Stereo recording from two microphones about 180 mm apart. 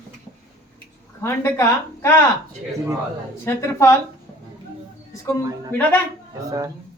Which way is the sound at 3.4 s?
15° left (ahead or behind).